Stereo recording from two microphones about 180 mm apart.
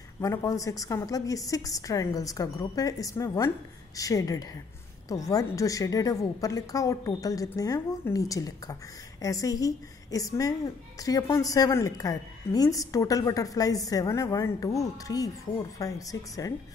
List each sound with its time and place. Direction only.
0.2 s a woman's voice: 15° left (ahead or behind)